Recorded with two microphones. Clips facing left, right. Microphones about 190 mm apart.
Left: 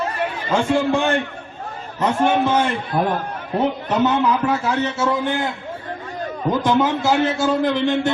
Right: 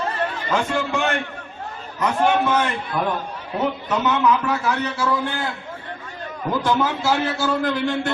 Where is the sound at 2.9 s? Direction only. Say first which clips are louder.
Left 3 dB; 30° left (ahead or behind).